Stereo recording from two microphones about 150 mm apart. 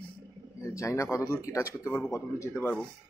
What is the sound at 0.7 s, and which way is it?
Speech, 20° left (ahead or behind).